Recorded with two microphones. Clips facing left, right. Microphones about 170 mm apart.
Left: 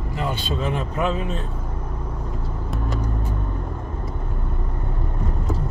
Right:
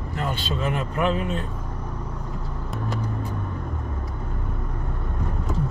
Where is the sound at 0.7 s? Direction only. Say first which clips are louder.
Right 1 dB; 25° left (ahead or behind).